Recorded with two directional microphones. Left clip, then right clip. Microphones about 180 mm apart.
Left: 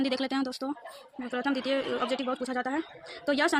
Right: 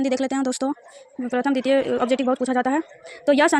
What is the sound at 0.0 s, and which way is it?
Speech, 35° right (ahead or behind).